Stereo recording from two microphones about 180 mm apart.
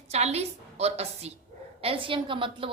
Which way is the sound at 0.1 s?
35° right (ahead or behind).